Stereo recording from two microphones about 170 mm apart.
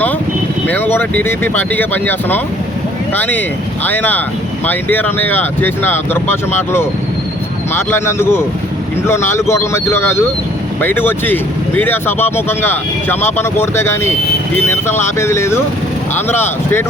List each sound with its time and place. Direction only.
0.7 s speech: 10° left (ahead or behind)